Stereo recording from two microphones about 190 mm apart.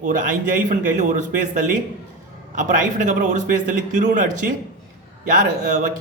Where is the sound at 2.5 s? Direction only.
40° right (ahead or behind).